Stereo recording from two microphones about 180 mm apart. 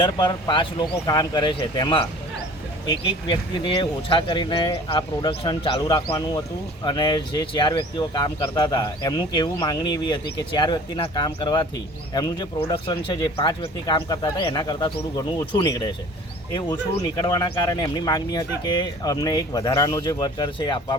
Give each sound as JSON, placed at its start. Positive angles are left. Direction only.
{"t": 0.0, "sound": "speech", "side_deg": 25}
{"t": 3.2, "sound": "speech", "side_deg": 30}